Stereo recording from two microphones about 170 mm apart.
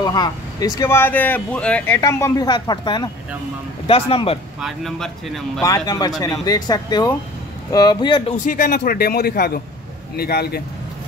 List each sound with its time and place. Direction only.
0.0 s speech: 25° left (ahead or behind); by 2.0 s 5° left (ahead or behind)
2.0 s speech: 15° left (ahead or behind); by 4.4 s 35° left (ahead or behind)
4.6 s speech: centre (ahead or behind)
5.6 s speech: 20° left (ahead or behind)
8.5 s a man's voice: 55° left (ahead or behind)